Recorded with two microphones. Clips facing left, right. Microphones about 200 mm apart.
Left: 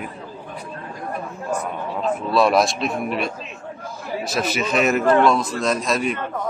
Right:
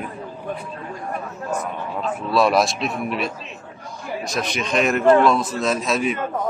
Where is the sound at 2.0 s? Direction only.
Centre (ahead or behind).